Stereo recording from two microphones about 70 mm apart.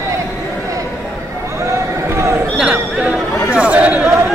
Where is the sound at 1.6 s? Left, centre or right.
Right.